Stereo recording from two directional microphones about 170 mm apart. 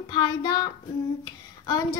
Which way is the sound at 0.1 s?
25° left (ahead or behind).